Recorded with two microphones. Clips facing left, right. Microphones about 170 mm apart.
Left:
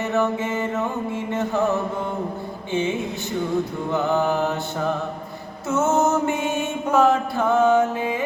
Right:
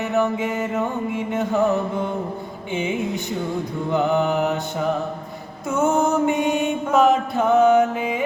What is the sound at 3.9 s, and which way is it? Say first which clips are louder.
Mantra: right 3 dB; 15° right (ahead or behind).